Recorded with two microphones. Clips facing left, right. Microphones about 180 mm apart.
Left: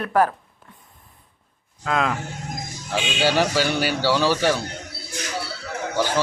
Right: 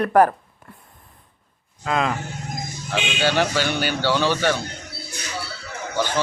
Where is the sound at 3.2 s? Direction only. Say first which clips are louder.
Left 1 dB; 5° left (ahead or behind).